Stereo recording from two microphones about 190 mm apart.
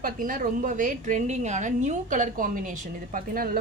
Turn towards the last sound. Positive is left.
turn(degrees=-50)  # may be behind; listen again after turning